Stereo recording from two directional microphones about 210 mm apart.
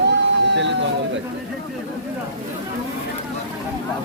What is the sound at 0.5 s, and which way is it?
Speech, 60° right (ahead or behind).